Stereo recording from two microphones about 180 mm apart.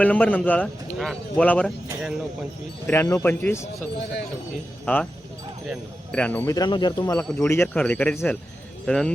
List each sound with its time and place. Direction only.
0.0 s a man's voice: 10° left (ahead or behind)
2.8 s a man's voice: 15° left (ahead or behind)
4.9 s a man's voice: 10° left (ahead or behind)